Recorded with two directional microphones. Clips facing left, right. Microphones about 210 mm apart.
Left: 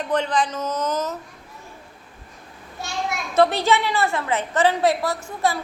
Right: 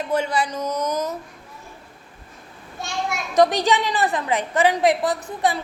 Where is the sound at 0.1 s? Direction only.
10° right (ahead or behind).